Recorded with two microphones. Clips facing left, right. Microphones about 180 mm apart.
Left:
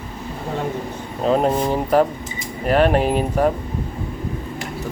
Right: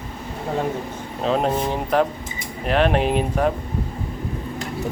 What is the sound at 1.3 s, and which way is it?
Speech, 5° left (ahead or behind).